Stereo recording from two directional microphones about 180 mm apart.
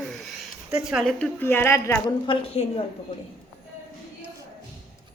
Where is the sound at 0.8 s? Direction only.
Centre (ahead or behind).